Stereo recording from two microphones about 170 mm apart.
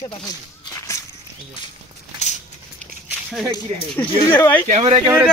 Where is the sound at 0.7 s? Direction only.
20° left (ahead or behind).